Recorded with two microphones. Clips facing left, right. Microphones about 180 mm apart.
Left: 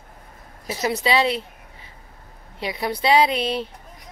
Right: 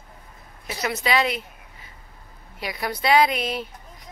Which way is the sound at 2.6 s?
25° left (ahead or behind).